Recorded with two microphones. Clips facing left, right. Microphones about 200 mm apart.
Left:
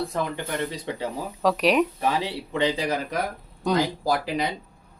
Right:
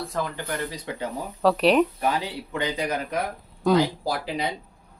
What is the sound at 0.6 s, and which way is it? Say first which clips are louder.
Speech: left 2 dB; 25° left (ahead or behind).